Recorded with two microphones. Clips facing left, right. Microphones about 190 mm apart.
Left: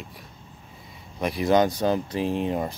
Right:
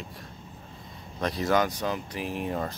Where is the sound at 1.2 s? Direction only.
10° left (ahead or behind).